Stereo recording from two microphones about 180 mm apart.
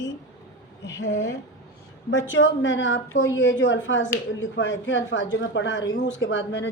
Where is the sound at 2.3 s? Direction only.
90° left.